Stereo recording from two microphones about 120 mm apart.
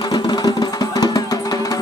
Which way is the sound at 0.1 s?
35° left (ahead or behind).